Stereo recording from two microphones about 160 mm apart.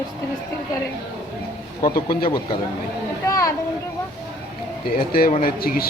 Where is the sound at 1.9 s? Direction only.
65° left (ahead or behind).